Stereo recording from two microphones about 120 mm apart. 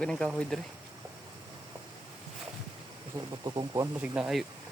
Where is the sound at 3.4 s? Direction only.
35° right (ahead or behind).